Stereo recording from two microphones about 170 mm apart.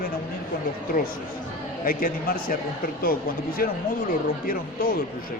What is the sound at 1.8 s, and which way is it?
Speech, 60° left (ahead or behind).